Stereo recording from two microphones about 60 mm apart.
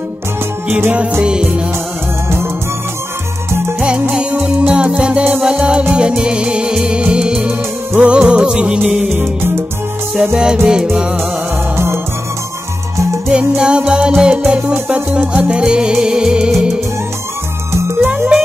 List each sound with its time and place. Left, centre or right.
0.7 s music: right
1.2 s music: centre
4.1 s music: centre
10.3 s music: centre
11.7 s music: right
13.3 s music: centre